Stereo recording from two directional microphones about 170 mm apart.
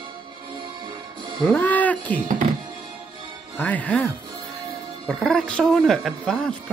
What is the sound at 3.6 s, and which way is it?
Speech, 10° left (ahead or behind).